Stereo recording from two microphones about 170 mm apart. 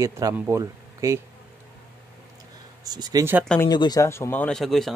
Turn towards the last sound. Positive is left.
turn(degrees=0)  # may be behind; listen again after turning